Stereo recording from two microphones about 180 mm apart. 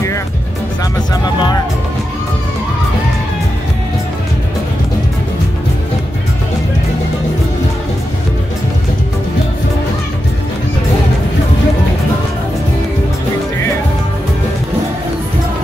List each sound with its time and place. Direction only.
1.1 s speech: 20° left (ahead or behind)